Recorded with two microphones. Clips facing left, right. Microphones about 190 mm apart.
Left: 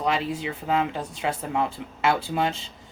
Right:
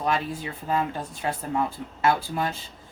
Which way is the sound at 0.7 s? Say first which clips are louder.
Left 1 dB; 90° left.